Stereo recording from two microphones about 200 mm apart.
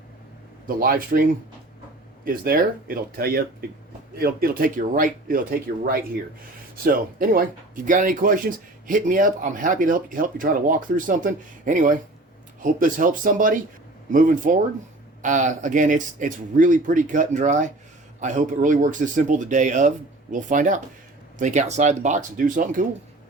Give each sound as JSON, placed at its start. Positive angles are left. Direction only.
{"t": 0.8, "sound": "speech", "side_deg": -45}
{"t": 2.2, "sound": "speech", "side_deg": -45}
{"t": 6.8, "sound": "speech", "side_deg": -45}